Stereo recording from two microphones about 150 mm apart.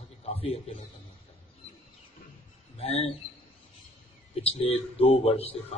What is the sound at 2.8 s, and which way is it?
Speech, 40° left (ahead or behind).